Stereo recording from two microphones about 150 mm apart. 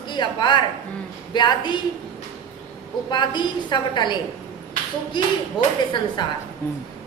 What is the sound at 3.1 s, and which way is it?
A woman's voice, 30° left (ahead or behind).